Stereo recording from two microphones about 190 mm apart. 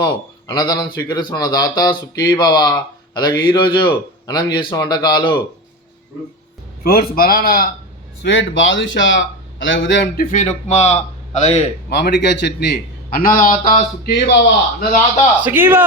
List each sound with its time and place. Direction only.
0.0 s a man's voice: 20° left (ahead or behind)
6.8 s a man's voice: 50° left (ahead or behind)
8.2 s a man's voice: 80° left
10.2 s a man's voice: 40° left (ahead or behind)
11.9 s a man's voice: 60° left (ahead or behind)
15.4 s a man's voice: 10° right (ahead or behind)